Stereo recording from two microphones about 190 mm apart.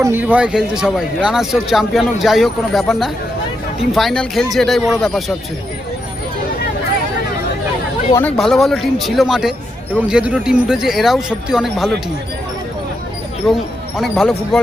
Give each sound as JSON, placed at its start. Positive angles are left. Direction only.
{"t": 0.0, "sound": "speech", "side_deg": -10}
{"t": 8.4, "sound": "speech", "side_deg": 0}
{"t": 13.5, "sound": "speech", "side_deg": 0}